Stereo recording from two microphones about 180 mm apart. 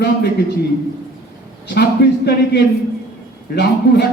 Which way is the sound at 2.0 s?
65° left (ahead or behind).